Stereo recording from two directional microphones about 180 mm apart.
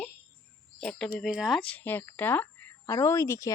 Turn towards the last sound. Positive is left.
turn(degrees=15)  # may be behind; listen again after turning